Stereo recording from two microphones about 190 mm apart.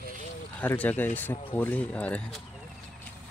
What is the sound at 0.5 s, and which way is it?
Speech, 10° left (ahead or behind).